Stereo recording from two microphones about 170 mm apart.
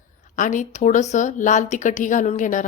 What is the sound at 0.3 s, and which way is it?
Speech, 50° left (ahead or behind).